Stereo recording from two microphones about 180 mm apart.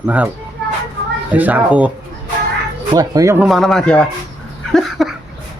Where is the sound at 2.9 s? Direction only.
20° right (ahead or behind).